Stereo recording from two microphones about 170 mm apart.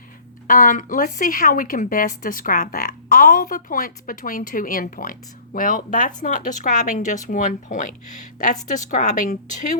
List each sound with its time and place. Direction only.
0.4 s speech: 50° left (ahead or behind)